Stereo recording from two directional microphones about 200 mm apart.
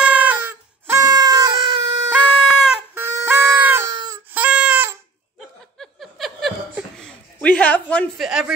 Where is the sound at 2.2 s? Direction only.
Centre (ahead or behind); by 4.2 s 20° right (ahead or behind).